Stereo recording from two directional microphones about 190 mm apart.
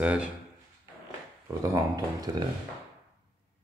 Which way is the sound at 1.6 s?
20° right (ahead or behind).